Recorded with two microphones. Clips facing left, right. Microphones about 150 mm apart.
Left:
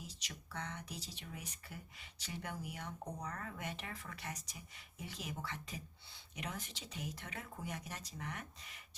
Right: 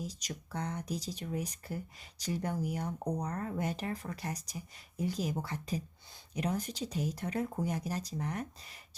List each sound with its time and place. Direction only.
0.0 s speech: 40° right (ahead or behind)